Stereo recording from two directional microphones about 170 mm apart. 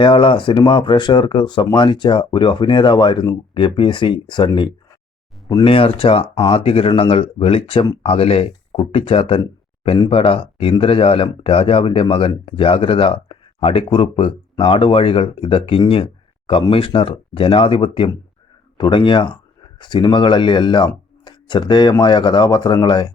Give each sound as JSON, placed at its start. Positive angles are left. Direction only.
{"t": 0.0, "sound": "speech", "side_deg": 30}